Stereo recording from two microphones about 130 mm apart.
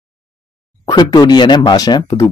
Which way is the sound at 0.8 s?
35° left (ahead or behind).